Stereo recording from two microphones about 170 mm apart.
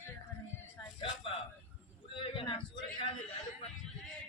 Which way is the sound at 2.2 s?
30° left (ahead or behind).